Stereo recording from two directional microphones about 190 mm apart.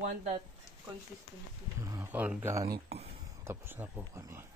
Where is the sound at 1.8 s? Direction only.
15° right (ahead or behind).